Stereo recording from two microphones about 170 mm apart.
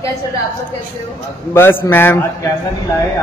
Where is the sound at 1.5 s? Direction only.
15° left (ahead or behind).